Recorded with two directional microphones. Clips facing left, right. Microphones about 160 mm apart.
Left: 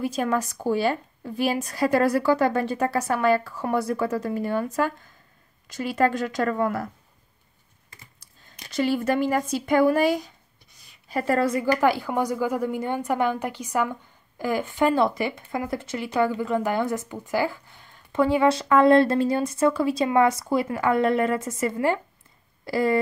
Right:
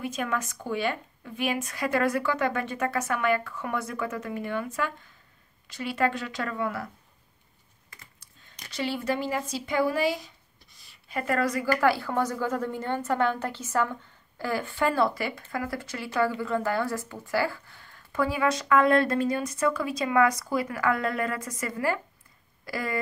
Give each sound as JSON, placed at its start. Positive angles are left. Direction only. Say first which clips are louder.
{"t": 0.0, "sound": "a woman's voice", "louder": "left 6 dB", "side_deg": 35}
{"t": 7.9, "sound": "computer keyboard", "louder": "left 1 dB", "side_deg": 30}
{"t": 8.6, "sound": "speech", "louder": "left 6 dB", "side_deg": 45}
{"t": 10.8, "sound": "speech", "louder": "left 5 dB", "side_deg": 35}